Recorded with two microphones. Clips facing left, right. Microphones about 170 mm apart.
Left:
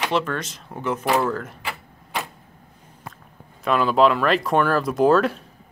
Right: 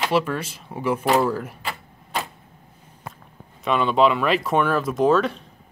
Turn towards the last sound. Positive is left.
turn(degrees=0)  # may be behind; listen again after turning